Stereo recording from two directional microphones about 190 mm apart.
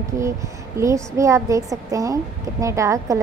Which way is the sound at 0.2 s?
15° right (ahead or behind).